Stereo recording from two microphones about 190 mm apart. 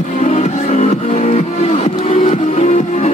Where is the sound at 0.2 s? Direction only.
35° left (ahead or behind).